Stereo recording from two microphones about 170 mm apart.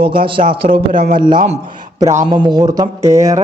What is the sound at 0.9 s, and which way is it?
Speech, 55° right (ahead or behind).